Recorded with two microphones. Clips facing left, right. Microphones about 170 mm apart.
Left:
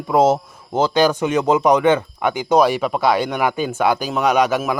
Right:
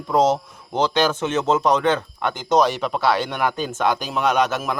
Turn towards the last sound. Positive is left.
turn(degrees=10)  # may be behind; listen again after turning